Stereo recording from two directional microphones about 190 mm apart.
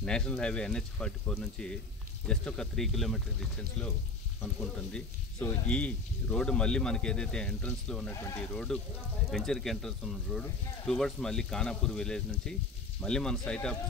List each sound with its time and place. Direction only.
0.0 s speech: 5° left (ahead or behind)